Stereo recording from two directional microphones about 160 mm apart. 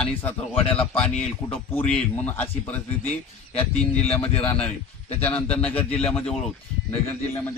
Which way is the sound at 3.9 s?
40° left (ahead or behind).